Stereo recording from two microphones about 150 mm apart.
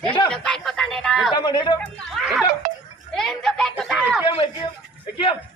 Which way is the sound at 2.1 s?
Centre (ahead or behind).